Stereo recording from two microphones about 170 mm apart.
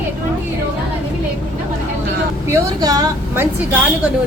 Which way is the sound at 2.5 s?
20° right (ahead or behind).